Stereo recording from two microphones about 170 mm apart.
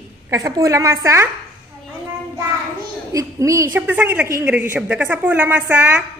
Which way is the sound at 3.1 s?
20° right (ahead or behind).